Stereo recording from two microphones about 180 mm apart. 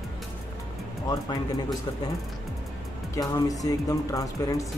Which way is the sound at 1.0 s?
20° left (ahead or behind).